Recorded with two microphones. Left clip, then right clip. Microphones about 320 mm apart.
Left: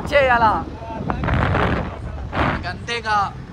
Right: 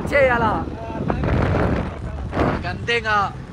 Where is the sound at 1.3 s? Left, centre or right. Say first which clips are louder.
Left 3 dB; right.